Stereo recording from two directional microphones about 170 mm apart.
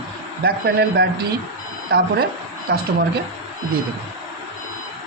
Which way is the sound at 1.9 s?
60° right (ahead or behind).